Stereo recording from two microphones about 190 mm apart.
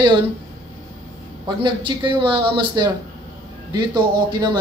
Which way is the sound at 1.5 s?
25° right (ahead or behind).